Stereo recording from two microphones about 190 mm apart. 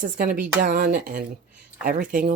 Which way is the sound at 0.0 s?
45° right (ahead or behind).